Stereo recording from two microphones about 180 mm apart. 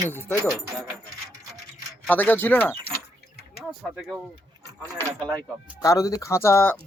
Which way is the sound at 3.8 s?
Centre (ahead or behind).